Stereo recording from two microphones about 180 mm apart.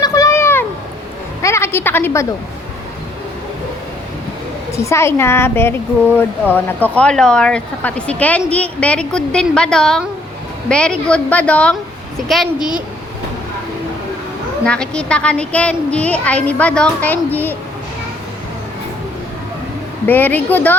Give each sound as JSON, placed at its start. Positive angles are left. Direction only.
{"t": 0.0, "sound": "a sound", "side_deg": 20}
{"t": 4.8, "sound": "a woman's voice", "side_deg": 15}
{"t": 14.6, "sound": "a woman's voice", "side_deg": 5}
{"t": 20.1, "sound": "a woman's voice", "side_deg": 10}